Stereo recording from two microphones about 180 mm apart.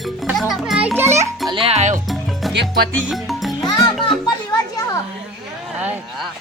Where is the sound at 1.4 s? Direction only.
30° right (ahead or behind).